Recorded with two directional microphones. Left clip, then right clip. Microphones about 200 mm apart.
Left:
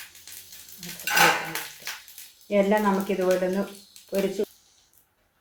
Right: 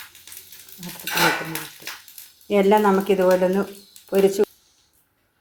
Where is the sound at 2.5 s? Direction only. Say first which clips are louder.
Right 5 dB; 50° right (ahead or behind).